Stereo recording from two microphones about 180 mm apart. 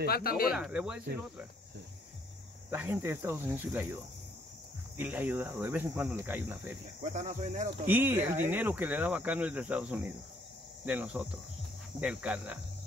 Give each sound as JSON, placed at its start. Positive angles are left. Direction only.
{"t": 0.0, "sound": "speech", "side_deg": 60}
{"t": 0.5, "sound": "speech", "side_deg": -5}
{"t": 2.7, "sound": "speech", "side_deg": -15}
{"t": 4.9, "sound": "speech", "side_deg": -10}
{"t": 7.0, "sound": "speech", "side_deg": -40}
{"t": 7.8, "sound": "speech", "side_deg": -10}